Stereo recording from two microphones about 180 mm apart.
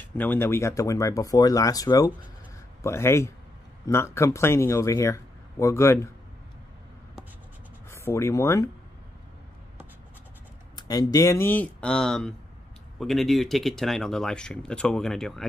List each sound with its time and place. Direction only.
0.0 s speech: 10° left (ahead or behind)
7.9 s speech: 15° left (ahead or behind)
10.8 s speech: 20° left (ahead or behind); by 15.4 s centre (ahead or behind)